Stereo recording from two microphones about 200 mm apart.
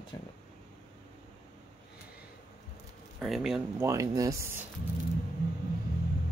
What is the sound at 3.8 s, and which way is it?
Speech, 15° right (ahead or behind).